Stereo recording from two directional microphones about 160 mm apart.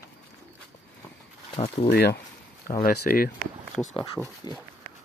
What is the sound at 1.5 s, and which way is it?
Speech, 35° left (ahead or behind).